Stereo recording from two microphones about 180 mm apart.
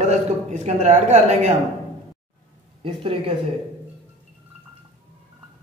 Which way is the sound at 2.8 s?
30° right (ahead or behind).